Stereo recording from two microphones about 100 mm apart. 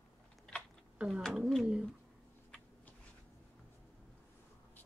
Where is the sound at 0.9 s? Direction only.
10° right (ahead or behind).